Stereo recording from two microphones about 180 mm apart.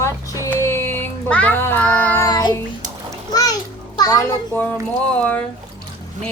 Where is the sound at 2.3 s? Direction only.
20° left (ahead or behind).